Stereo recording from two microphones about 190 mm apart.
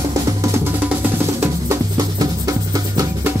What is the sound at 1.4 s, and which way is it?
Music, 15° right (ahead or behind).